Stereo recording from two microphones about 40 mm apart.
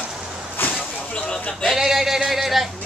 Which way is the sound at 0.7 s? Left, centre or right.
Left.